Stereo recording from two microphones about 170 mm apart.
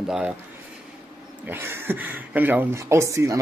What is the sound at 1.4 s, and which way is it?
Speech, 15° right (ahead or behind).